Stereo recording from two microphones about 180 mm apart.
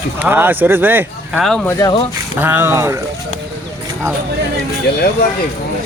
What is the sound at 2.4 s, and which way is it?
Speech, 10° right (ahead or behind).